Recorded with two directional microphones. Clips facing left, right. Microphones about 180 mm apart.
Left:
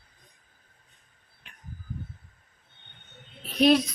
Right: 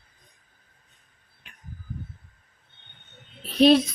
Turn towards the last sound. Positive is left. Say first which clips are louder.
# right 3 dB
turn(degrees=-30)  # may be behind; listen again after turning